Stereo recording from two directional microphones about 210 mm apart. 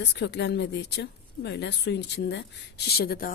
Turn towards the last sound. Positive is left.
turn(degrees=45)  # may be behind; listen again after turning